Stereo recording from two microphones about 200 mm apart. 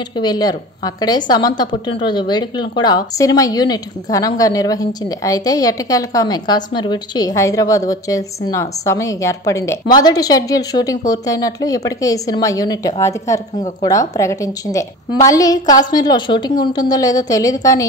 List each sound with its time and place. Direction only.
0.1 s a woman's voice: 20° left (ahead or behind)